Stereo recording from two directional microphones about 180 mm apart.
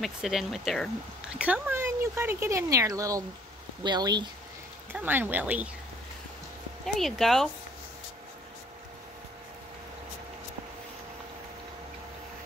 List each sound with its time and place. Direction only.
0.0 s speech: centre (ahead or behind); by 4.3 s 25° right (ahead or behind)
4.9 s speech: 10° right (ahead or behind)
7.0 s speech: centre (ahead or behind)